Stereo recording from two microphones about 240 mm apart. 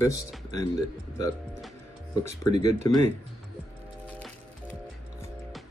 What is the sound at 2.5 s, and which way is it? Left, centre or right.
Speech, right.